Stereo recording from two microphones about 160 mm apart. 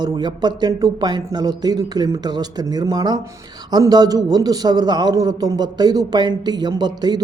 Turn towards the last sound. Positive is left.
turn(degrees=-25)  # may be behind; listen again after turning